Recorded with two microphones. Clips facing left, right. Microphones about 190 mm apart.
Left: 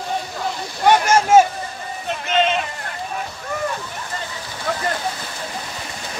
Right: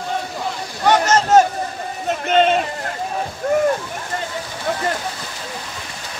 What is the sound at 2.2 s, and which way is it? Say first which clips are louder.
Speech: right 4 dB; 50° right (ahead or behind).